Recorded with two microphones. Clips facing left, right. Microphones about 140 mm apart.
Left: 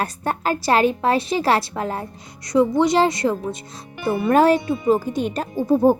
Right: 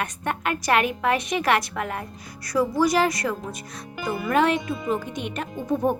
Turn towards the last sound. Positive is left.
turn(degrees=30)  # may be behind; listen again after turning